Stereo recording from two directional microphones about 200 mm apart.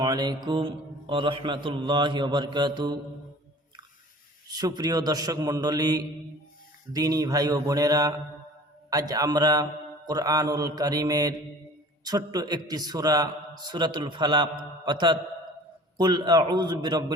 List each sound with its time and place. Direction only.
0.0 s mantra: 20° right (ahead or behind)
0.4 s a man's voice: 25° right (ahead or behind)
4.4 s a man's voice: 20° right (ahead or behind)
6.9 s mantra: 20° right (ahead or behind)
8.9 s a man's voice: 20° right (ahead or behind)
10.1 s mantra: 20° right (ahead or behind)
12.0 s a man's voice: 20° right (ahead or behind)